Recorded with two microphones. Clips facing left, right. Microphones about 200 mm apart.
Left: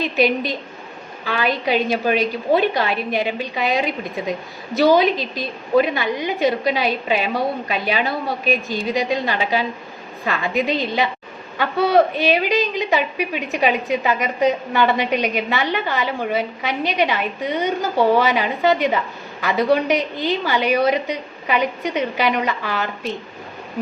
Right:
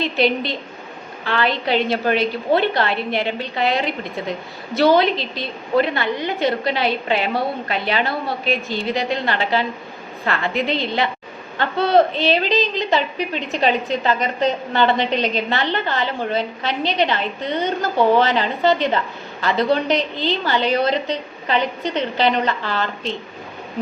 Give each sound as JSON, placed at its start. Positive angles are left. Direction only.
{"t": 0.0, "sound": "a woman's voice", "side_deg": 15}
{"t": 17.9, "sound": "a woman's voice", "side_deg": -15}
{"t": 18.2, "sound": "a woman's voice", "side_deg": 15}